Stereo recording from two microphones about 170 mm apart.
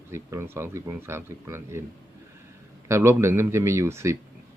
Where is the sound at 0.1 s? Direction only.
15° right (ahead or behind).